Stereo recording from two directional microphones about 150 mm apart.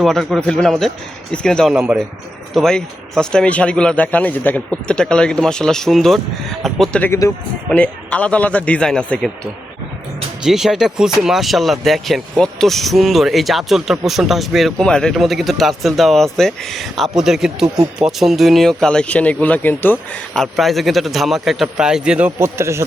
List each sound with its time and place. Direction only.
0.0 s speech: centre (ahead or behind)
1.8 s speech: 10° right (ahead or behind)
2.5 s speech: 5° left (ahead or behind)
7.1 s a man's voice: 20° left (ahead or behind)
10.4 s speech: 5° right (ahead or behind)
20.3 s speech: centre (ahead or behind)
22.4 s speech: 15° right (ahead or behind)